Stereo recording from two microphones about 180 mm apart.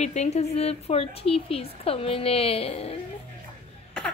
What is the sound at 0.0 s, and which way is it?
A woman's voice, 40° left (ahead or behind).